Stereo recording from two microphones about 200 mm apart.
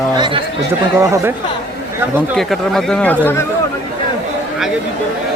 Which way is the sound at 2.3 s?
Centre (ahead or behind).